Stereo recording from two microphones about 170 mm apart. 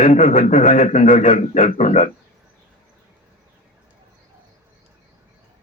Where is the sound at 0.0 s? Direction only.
50° left (ahead or behind).